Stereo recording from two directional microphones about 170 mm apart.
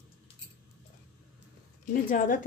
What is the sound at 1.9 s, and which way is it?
Speech, 50° left (ahead or behind).